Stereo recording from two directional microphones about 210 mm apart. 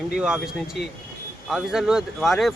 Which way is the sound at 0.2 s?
5° right (ahead or behind).